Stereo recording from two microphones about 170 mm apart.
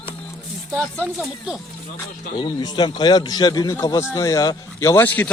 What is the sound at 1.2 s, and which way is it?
Speech, 5° right (ahead or behind).